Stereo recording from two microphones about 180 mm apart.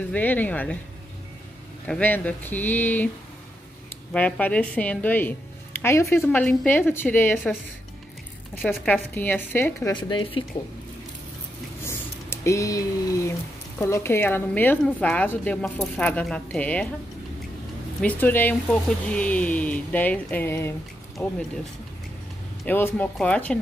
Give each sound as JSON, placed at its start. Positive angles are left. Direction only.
{"t": 0.1, "sound": "speech", "side_deg": 10}
{"t": 1.9, "sound": "speech", "side_deg": 10}
{"t": 4.1, "sound": "speech", "side_deg": 10}
{"t": 8.6, "sound": "speech", "side_deg": 10}
{"t": 9.9, "sound": "speech", "side_deg": 25}
{"t": 11.8, "sound": "speech", "side_deg": 15}
{"t": 18.0, "sound": "speech", "side_deg": 10}
{"t": 22.7, "sound": "speech", "side_deg": 10}